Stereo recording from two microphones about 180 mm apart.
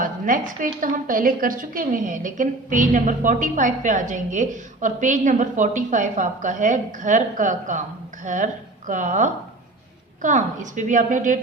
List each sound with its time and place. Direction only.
0.0 s a woman's voice: 50° right (ahead or behind)